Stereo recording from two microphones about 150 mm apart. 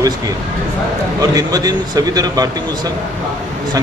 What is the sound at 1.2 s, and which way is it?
Speech, 25° right (ahead or behind).